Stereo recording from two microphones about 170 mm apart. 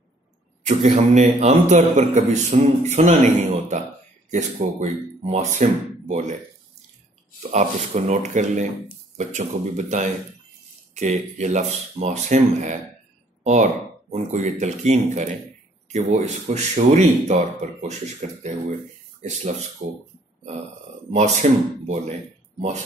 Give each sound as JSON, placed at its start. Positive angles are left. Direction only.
{"t": 0.7, "sound": "a man's voice", "side_deg": -45}
{"t": 7.5, "sound": "a man's voice", "side_deg": -45}
{"t": 13.4, "sound": "a sound", "side_deg": -45}
{"t": 14.1, "sound": "a man's voice", "side_deg": -45}
{"t": 21.1, "sound": "a man's voice", "side_deg": -45}